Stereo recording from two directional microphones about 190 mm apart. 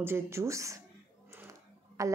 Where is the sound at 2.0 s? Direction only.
15° right (ahead or behind).